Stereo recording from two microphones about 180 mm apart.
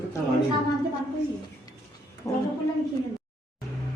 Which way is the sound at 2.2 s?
20° left (ahead or behind).